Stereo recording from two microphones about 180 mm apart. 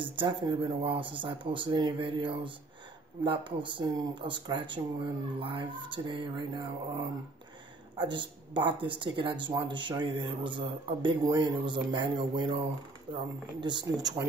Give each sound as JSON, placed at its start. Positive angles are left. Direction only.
{"t": 0.0, "sound": "speech", "side_deg": -30}
{"t": 8.0, "sound": "speech", "side_deg": -25}